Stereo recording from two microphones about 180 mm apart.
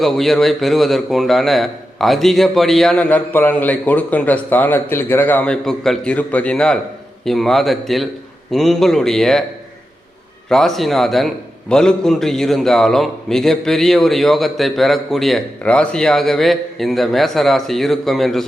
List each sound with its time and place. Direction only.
0.0 s a man's voice: centre (ahead or behind)
10.5 s a man's voice: centre (ahead or behind)